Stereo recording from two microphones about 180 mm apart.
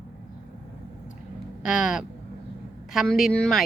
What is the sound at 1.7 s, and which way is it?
Speech, 5° right (ahead or behind).